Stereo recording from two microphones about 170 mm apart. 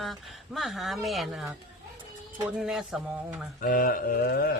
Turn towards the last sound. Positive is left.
turn(degrees=60)  # may be behind; listen again after turning